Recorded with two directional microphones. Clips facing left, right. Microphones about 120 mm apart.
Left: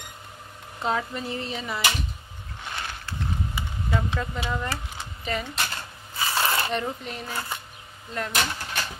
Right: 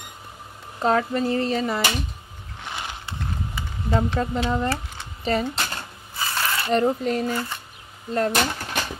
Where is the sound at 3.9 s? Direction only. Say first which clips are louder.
Right 6 dB; 35° right (ahead or behind).